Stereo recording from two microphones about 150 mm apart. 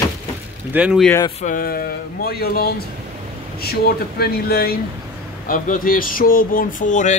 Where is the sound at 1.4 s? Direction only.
70° left (ahead or behind); by 4.7 s 90° left.